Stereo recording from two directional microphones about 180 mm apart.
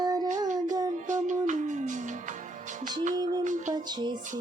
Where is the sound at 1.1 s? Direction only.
45° right (ahead or behind).